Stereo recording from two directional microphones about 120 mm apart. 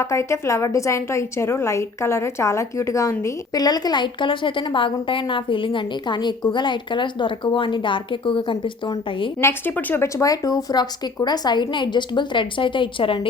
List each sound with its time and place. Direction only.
0.0 s a woman's voice: 25° left (ahead or behind); by 9.3 s 45° left (ahead or behind)
9.4 s a woman's voice: 15° left (ahead or behind); by 13.2 s 45° left (ahead or behind)